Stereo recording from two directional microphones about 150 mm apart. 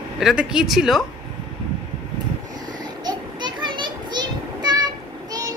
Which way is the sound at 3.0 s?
30° right (ahead or behind).